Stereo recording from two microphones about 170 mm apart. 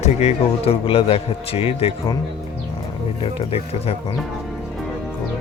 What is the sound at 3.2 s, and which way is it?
Speech, 35° left (ahead or behind).